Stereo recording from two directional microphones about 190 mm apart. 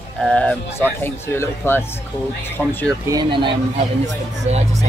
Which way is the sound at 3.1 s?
25° right (ahead or behind).